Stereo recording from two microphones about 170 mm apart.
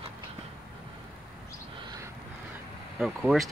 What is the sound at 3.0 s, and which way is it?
Speech, centre (ahead or behind).